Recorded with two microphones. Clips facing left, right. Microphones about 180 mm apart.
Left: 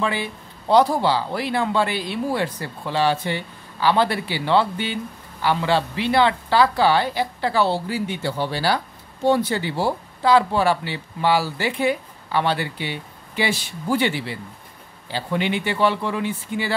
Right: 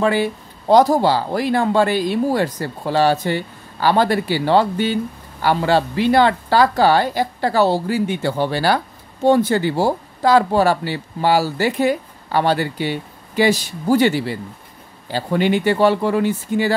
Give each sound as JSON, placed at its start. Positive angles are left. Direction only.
{"t": 0.0, "sound": "speech", "side_deg": -45}